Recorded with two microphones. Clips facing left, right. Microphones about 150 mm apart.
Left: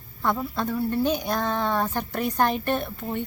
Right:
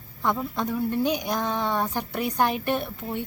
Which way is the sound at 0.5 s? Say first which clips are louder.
Even; 15° right (ahead or behind).